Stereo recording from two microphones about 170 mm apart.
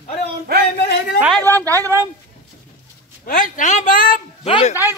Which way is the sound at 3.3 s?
50° left (ahead or behind).